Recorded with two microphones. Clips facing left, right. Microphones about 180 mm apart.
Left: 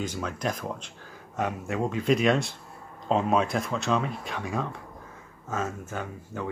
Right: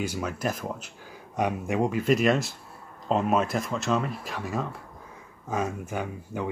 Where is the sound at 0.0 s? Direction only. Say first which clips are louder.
Right 1 dB; 10° right (ahead or behind).